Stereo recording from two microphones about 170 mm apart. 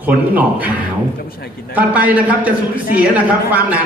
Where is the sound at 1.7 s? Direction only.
10° right (ahead or behind).